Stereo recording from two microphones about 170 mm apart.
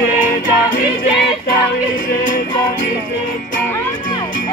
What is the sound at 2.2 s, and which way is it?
Music, 50° left (ahead or behind).